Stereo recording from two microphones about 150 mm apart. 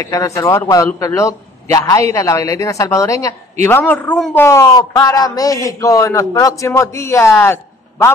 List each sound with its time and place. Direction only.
0.0 s a man's voice: 20° left (ahead or behind)